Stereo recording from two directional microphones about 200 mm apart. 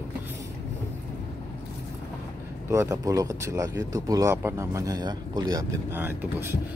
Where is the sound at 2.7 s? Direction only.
15° right (ahead or behind).